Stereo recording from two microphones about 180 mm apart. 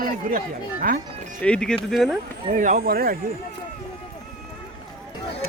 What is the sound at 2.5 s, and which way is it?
Speech, 50° right (ahead or behind).